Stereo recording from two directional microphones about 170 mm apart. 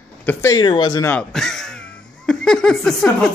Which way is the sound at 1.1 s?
5° left (ahead or behind).